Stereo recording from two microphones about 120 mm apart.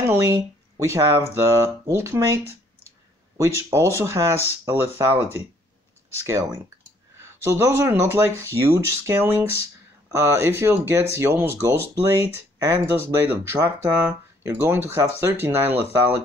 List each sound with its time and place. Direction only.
0.0 s speech: 20° right (ahead or behind)